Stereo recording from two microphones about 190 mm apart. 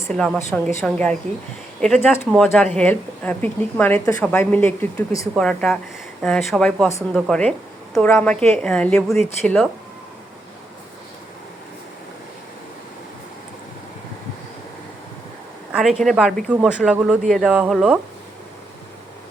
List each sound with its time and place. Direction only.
0.8 s a woman's voice: 5° left (ahead or behind)
15.7 s speech: centre (ahead or behind)